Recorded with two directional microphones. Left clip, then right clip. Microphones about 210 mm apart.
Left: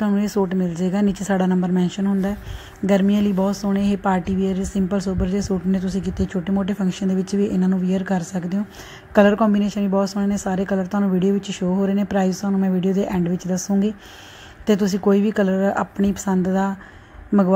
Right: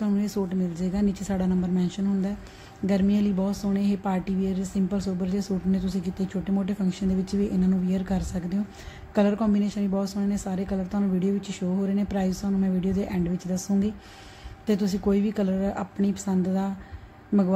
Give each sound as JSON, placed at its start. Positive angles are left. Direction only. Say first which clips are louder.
{"t": 0.0, "sound": "speech", "louder": "left 7 dB", "side_deg": 15}